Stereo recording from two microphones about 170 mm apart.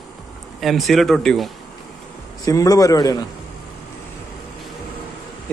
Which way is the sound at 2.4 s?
20° left (ahead or behind).